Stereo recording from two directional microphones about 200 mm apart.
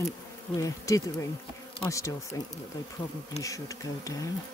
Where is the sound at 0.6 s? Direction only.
15° left (ahead or behind).